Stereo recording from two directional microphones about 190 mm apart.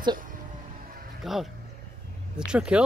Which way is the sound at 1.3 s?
Centre (ahead or behind).